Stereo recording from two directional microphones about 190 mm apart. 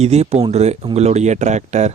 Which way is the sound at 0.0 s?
35° right (ahead or behind).